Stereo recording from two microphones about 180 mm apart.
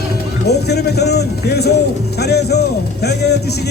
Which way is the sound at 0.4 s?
65° left (ahead or behind).